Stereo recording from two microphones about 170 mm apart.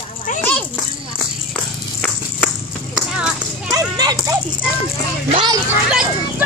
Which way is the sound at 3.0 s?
5° right (ahead or behind).